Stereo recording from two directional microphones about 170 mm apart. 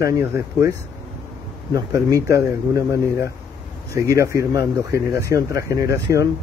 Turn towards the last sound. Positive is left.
turn(degrees=-20)  # may be behind; listen again after turning